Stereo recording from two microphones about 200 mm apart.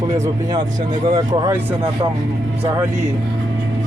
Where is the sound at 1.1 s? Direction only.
20° right (ahead or behind).